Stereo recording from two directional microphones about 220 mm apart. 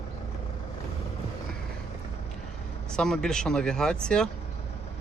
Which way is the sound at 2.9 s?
Centre (ahead or behind).